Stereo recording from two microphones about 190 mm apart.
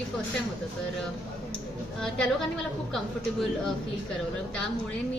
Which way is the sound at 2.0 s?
5° left (ahead or behind).